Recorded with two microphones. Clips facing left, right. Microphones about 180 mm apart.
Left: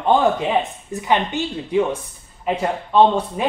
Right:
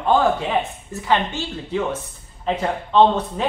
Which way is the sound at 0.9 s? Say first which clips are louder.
Left 1 dB; 15° left (ahead or behind).